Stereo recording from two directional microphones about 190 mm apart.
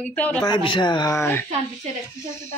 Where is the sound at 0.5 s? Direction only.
25° left (ahead or behind).